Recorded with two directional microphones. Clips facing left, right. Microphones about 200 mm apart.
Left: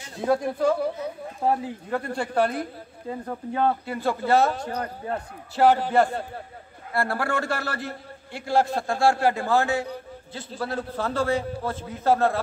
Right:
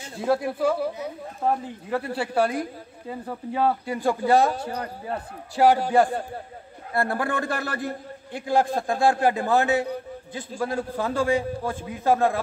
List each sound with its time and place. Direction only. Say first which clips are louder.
0.2 s speech: even; 5° right (ahead or behind)
1.4 s speech: left 1 dB; 5° left (ahead or behind)
1.9 s a man's voice: right 2 dB; 5° right (ahead or behind)
3.8 s a man's voice: right 2 dB; 15° right (ahead or behind)